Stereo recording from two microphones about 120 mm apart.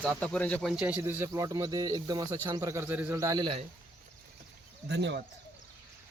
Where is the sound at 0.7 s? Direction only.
10° right (ahead or behind); by 2.4 s 35° right (ahead or behind).